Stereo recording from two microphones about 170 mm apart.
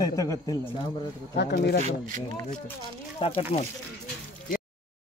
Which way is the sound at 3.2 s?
35° left (ahead or behind).